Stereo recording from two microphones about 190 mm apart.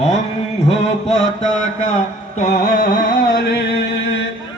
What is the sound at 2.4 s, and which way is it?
Music, 45° left (ahead or behind).